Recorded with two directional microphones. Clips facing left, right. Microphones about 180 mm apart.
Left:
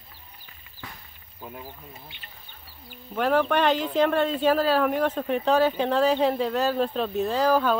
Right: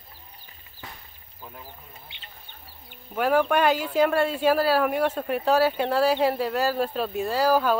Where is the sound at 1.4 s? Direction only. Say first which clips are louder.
Left 4 dB; 10° left (ahead or behind).